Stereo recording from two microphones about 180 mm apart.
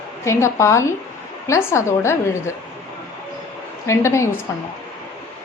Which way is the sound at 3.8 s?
15° left (ahead or behind).